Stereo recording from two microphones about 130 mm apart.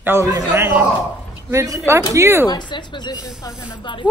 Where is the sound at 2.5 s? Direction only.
35° left (ahead or behind).